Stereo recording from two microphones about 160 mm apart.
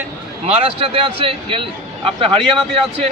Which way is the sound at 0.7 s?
35° right (ahead or behind).